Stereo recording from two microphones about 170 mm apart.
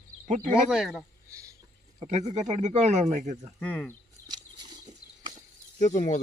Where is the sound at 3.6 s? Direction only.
10° left (ahead or behind).